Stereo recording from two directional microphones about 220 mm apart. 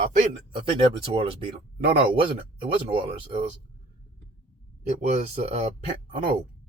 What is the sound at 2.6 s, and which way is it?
Speech, 25° right (ahead or behind).